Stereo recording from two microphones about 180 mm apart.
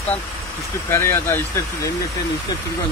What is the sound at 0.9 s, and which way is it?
Speech, 15° left (ahead or behind).